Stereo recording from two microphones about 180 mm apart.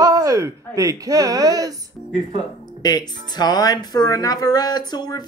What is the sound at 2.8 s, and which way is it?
Speech, 20° left (ahead or behind).